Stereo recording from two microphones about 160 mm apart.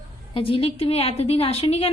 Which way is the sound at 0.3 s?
35° left (ahead or behind).